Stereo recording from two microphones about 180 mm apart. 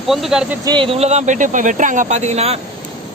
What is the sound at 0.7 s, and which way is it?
Speech, 30° right (ahead or behind).